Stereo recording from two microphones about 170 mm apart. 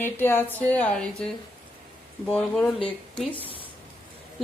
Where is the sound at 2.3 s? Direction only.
5° left (ahead or behind).